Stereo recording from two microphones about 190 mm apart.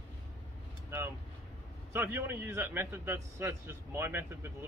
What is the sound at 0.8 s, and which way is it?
A man's voice, 15° right (ahead or behind).